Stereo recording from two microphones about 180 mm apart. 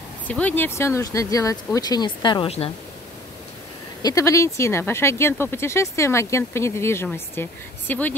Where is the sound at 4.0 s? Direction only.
20° left (ahead or behind).